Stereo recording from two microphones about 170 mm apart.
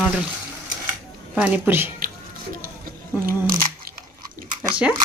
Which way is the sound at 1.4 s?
10° right (ahead or behind).